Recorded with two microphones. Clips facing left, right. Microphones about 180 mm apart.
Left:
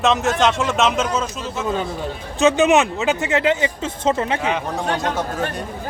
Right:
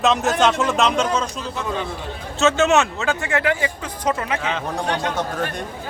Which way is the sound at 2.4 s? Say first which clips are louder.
Left 2 dB; 15° left (ahead or behind).